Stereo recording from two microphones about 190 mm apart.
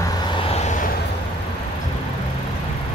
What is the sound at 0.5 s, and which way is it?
Vehicle, 35° left (ahead or behind).